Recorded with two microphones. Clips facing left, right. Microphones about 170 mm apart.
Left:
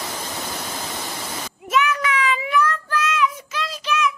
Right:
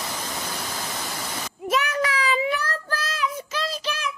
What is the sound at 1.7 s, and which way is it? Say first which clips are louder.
Child singing: left 3 dB; 40° right (ahead or behind).